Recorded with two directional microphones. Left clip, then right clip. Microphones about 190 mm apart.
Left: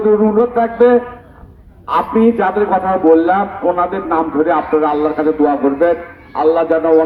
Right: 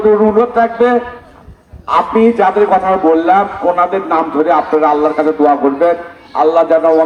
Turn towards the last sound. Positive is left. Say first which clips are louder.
# right 3 dB
turn(degrees=-35)  # may be behind; listen again after turning